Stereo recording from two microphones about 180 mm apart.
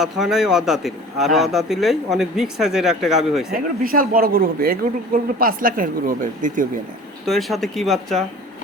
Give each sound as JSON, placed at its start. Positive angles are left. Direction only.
{"t": 0.0, "sound": "a man's voice", "side_deg": 0}
{"t": 3.5, "sound": "speech", "side_deg": -55}
{"t": 7.3, "sound": "a man's voice", "side_deg": 0}